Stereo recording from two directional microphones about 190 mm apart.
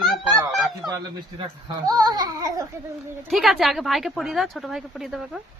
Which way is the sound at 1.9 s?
20° right (ahead or behind).